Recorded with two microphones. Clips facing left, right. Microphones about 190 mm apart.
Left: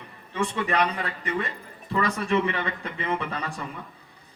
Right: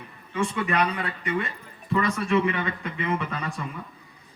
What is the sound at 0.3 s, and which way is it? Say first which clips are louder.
A man's voice: even; 35° left (ahead or behind).